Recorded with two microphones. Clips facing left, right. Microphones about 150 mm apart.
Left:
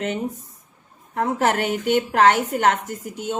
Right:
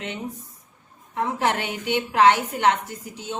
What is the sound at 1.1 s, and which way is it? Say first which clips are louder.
A woman's voice: left 3 dB; 45° left (ahead or behind).